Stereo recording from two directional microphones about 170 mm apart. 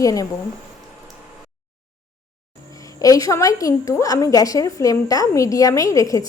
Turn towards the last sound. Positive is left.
turn(degrees=20)  # may be behind; listen again after turning